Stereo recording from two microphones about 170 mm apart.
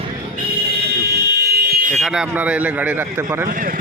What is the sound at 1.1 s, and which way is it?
Fire alarm, 70° right (ahead or behind).